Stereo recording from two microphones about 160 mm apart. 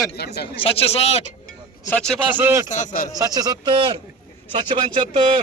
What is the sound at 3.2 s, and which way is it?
Speech, 25° right (ahead or behind).